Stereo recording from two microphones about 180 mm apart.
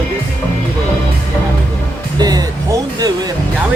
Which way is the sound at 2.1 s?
20° right (ahead or behind).